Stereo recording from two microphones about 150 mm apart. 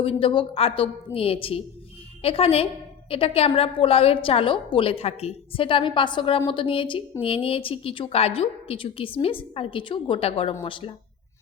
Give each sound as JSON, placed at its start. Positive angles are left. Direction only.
{"t": 0.0, "sound": "a woman's voice", "side_deg": 40}